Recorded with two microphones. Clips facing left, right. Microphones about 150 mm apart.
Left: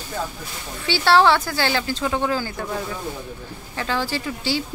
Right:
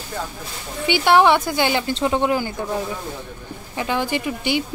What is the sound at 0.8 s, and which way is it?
Speech, 15° right (ahead or behind).